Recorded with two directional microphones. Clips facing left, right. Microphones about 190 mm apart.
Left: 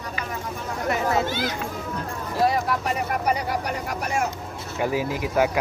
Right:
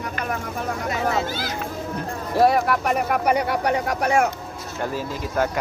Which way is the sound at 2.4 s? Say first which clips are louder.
Right 5 dB; 65° right (ahead or behind).